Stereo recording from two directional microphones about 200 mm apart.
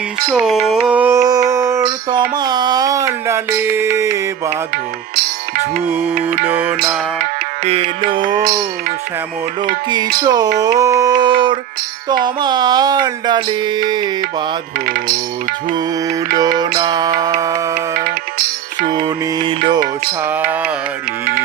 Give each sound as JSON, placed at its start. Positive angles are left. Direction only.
{"t": 0.3, "sound": "music", "side_deg": 0}
{"t": 0.7, "sound": "mantra", "side_deg": -5}
{"t": 2.3, "sound": "a sound", "side_deg": -20}
{"t": 6.4, "sound": "a sound", "side_deg": -10}
{"t": 7.6, "sound": "music", "side_deg": -30}
{"t": 8.2, "sound": "music", "side_deg": -40}
{"t": 10.2, "sound": "music", "side_deg": -20}
{"t": 14.8, "sound": "music", "side_deg": -45}
{"t": 15.7, "sound": "music", "side_deg": -20}
{"t": 17.7, "sound": "music", "side_deg": -45}
{"t": 18.9, "sound": "music", "side_deg": -20}
{"t": 20.2, "sound": "a sound", "side_deg": -10}